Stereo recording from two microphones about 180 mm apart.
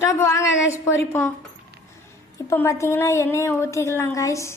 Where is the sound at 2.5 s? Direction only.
15° left (ahead or behind).